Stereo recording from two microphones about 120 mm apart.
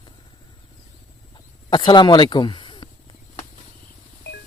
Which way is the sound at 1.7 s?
40° left (ahead or behind).